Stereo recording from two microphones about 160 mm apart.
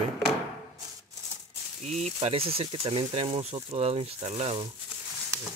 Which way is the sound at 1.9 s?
45° right (ahead or behind).